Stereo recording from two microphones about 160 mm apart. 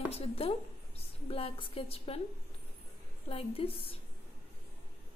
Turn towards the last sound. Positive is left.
turn(degrees=35)  # may be behind; listen again after turning